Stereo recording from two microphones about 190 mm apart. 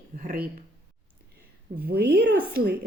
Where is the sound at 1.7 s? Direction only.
55° right (ahead or behind).